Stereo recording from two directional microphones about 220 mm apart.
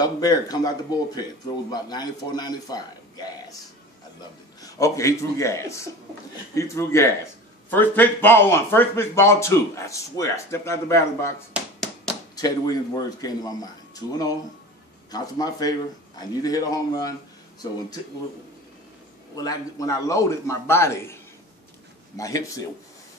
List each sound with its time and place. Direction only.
0.0 s a man's voice: 15° left (ahead or behind)
4.6 s speech: 15° left (ahead or behind)
12.4 s speech: 15° left (ahead or behind)
19.3 s speech: 15° left (ahead or behind)